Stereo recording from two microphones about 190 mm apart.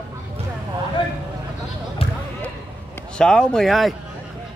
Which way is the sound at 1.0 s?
25° left (ahead or behind).